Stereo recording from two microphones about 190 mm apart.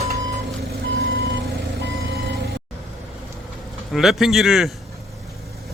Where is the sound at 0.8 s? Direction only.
75° right (ahead or behind).